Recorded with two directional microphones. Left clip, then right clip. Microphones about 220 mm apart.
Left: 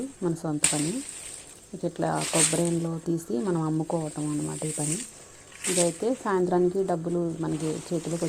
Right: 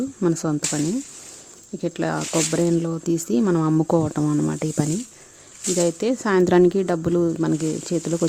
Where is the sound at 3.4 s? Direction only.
50° right (ahead or behind).